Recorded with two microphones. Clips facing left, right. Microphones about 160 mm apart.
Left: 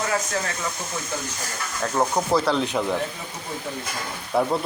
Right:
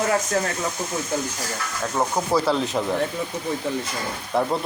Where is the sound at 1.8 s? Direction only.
Centre (ahead or behind).